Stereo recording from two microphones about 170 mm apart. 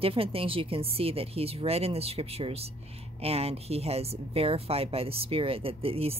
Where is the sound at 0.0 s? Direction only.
35° right (ahead or behind).